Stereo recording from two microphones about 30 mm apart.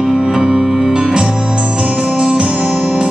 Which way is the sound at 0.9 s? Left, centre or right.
Centre.